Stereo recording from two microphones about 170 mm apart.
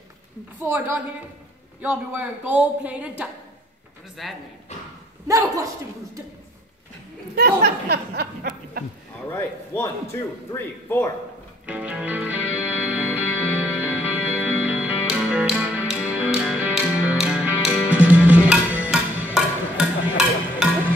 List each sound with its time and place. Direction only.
0.6 s a woman's voice: 10° right (ahead or behind)
5.3 s a man's voice: 20° right (ahead or behind)
7.3 s speech: 70° right (ahead or behind)
9.3 s a man's voice: 15° left (ahead or behind)
11.6 s music: 10° right (ahead or behind)